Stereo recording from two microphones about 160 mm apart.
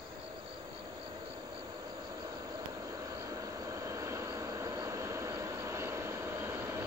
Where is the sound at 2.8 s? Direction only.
20° right (ahead or behind).